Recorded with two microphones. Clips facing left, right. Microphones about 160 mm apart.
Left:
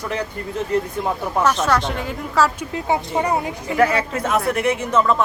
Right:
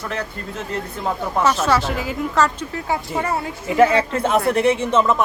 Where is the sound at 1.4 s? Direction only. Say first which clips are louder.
Right 1 dB; 5° right (ahead or behind).